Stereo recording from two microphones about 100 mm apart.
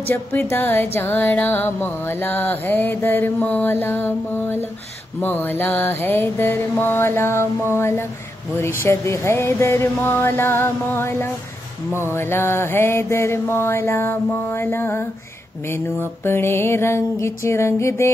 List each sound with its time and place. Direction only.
0.1 s music: 20° left (ahead or behind)